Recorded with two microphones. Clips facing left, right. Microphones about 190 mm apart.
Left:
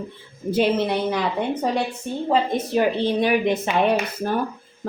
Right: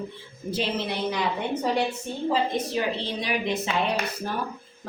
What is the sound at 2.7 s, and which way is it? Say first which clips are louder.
A woman's voice: left 8 dB; 55° left (ahead or behind).